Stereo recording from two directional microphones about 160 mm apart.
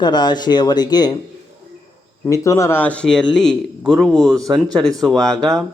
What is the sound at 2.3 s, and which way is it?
Speech, 20° left (ahead or behind).